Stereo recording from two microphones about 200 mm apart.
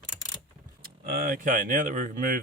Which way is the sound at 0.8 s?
45° right (ahead or behind).